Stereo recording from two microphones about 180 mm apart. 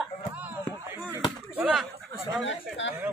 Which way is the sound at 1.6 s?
5° right (ahead or behind).